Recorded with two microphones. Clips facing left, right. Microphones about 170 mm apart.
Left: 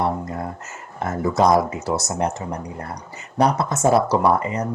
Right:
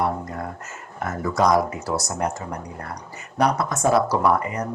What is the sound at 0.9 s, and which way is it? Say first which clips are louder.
Speech: left 3 dB; 25° left (ahead or behind).